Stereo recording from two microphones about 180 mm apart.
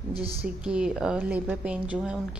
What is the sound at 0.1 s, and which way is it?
Speech, 30° right (ahead or behind).